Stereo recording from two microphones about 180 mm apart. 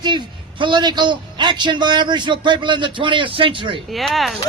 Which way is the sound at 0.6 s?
25° right (ahead or behind).